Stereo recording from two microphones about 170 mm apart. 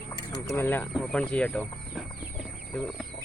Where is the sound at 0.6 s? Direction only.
10° left (ahead or behind).